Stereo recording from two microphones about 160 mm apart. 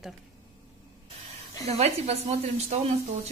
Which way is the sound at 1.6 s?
40° right (ahead or behind).